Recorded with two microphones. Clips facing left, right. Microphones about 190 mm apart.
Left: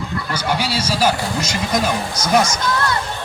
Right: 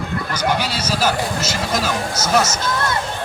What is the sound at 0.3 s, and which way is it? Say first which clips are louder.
Speech: even; 10° left (ahead or behind).